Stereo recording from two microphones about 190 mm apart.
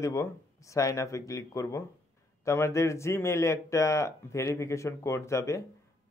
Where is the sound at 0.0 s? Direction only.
15° left (ahead or behind).